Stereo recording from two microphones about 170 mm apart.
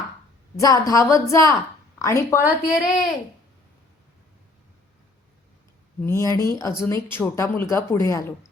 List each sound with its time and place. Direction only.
0.5 s a woman's voice: 20° left (ahead or behind)
6.0 s speech: 15° left (ahead or behind)